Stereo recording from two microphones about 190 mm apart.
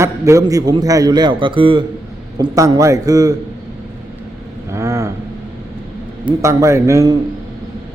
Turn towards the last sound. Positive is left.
turn(degrees=-15)  # may be behind; listen again after turning